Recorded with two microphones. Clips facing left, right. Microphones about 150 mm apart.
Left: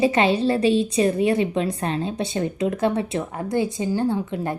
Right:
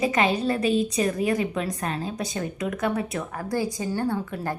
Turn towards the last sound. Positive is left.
turn(degrees=20)  # may be behind; listen again after turning